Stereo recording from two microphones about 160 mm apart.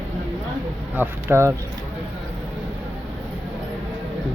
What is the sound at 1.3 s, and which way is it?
Speech, 15° right (ahead or behind).